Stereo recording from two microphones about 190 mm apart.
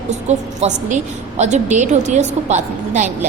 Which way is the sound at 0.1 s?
35° right (ahead or behind).